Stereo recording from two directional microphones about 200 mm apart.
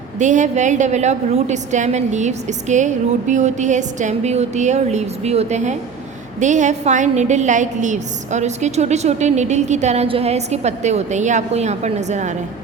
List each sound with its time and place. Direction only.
0.2 s a woman's voice: 40° right (ahead or behind)